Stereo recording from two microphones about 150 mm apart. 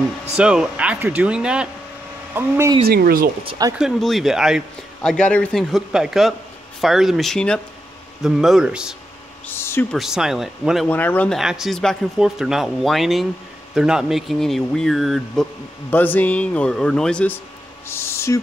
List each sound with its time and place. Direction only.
0.4 s speech: 5° right (ahead or behind)
2.3 s speech: 15° right (ahead or behind)
2.9 s speech: 80° right
3.7 s a man's voice: centre (ahead or behind)
9.5 s speech: 15° left (ahead or behind)
9.9 s a man's voice: 5° right (ahead or behind)
10.9 s a man's voice: 10° left (ahead or behind)
11.3 s a man's voice: 5° right (ahead or behind)
15.9 s a man's voice: 15° left (ahead or behind)
17.8 s speech: 15° left (ahead or behind)